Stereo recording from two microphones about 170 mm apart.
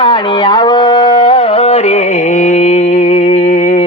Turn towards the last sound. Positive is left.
turn(degrees=45)  # may be behind; listen again after turning